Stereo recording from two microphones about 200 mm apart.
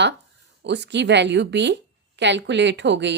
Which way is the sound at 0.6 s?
60° right (ahead or behind).